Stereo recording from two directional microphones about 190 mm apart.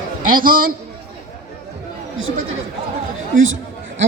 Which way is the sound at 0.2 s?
45° right (ahead or behind).